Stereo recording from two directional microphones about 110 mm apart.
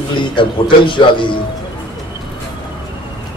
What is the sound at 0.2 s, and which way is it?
A man's voice, 50° left (ahead or behind).